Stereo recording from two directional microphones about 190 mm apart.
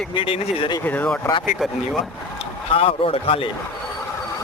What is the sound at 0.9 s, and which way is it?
Speech, 5° left (ahead or behind).